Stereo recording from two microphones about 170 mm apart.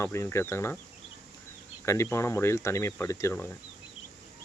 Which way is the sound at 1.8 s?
15° left (ahead or behind).